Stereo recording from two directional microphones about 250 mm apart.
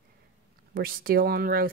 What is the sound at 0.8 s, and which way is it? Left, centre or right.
Speech, right.